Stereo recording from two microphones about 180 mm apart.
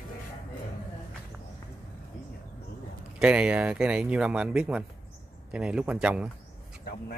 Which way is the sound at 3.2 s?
5° right (ahead or behind).